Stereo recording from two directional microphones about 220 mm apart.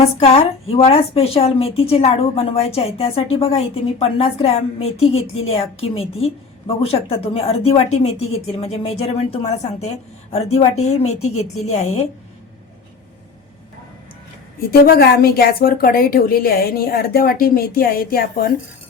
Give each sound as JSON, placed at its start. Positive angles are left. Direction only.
{"t": 0.2, "sound": "a woman's voice", "side_deg": 25}
{"t": 14.7, "sound": "a woman's voice", "side_deg": 45}